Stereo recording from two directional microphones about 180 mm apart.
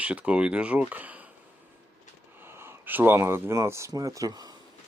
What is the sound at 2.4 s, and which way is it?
Speech, 15° right (ahead or behind).